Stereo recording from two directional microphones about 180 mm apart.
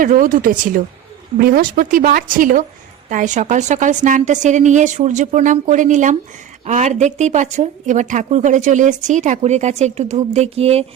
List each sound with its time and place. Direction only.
0.0 s a woman's voice: 50° right (ahead or behind)